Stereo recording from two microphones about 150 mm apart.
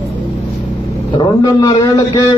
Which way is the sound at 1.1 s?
25° left (ahead or behind).